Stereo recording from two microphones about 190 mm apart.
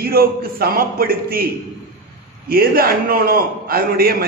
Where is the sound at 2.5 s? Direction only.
50° right (ahead or behind).